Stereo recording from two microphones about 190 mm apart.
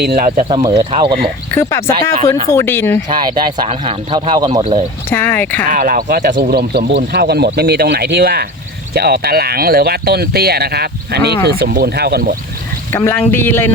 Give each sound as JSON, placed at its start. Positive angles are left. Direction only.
{"t": 0.0, "sound": "speech", "side_deg": -55}
{"t": 0.3, "sound": "speech", "side_deg": -40}
{"t": 0.5, "sound": "a man's voice", "side_deg": -25}
{"t": 2.5, "sound": "speech", "side_deg": 10}
{"t": 3.1, "sound": "a man's voice", "side_deg": -25}
{"t": 5.0, "sound": "speech", "side_deg": 10}
{"t": 5.7, "sound": "speech", "side_deg": -45}
{"t": 12.9, "sound": "speech", "side_deg": 10}